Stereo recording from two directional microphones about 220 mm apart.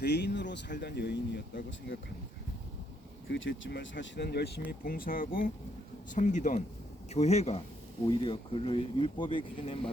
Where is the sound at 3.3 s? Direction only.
60° left (ahead or behind).